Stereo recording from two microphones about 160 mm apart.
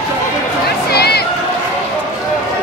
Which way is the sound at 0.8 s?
85° left.